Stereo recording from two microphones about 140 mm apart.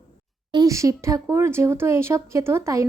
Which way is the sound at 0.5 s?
25° right (ahead or behind).